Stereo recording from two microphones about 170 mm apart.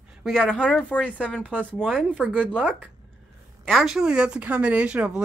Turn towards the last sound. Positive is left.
turn(degrees=-5)  # may be behind; listen again after turning